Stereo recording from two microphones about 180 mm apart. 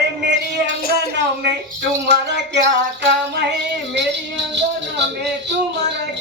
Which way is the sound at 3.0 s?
70° right (ahead or behind).